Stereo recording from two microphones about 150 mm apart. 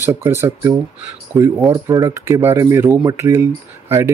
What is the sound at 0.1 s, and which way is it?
Speech, 15° right (ahead or behind).